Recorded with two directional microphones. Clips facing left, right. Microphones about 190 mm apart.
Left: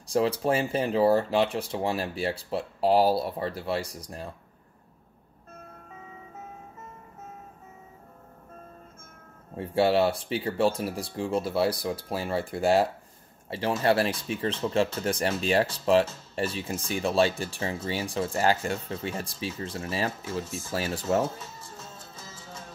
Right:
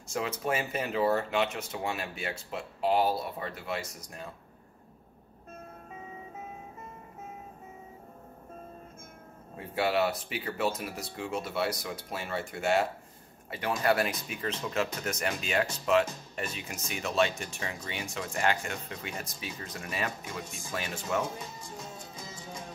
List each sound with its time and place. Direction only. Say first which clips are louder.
0.1 s speech: left 7 dB; 30° left (ahead or behind)
9.6 s speech: left 6 dB; 30° left (ahead or behind)
20.4 s speech: left 6 dB; 15° right (ahead or behind)
20.7 s speech: left 6 dB; 35° left (ahead or behind)
21.2 s music: left 5 dB; 15° right (ahead or behind)